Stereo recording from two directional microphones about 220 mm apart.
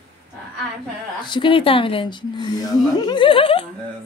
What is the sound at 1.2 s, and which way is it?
Speech, 20° left (ahead or behind).